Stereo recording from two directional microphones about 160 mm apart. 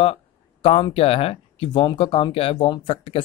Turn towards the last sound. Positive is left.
turn(degrees=35)  # may be behind; listen again after turning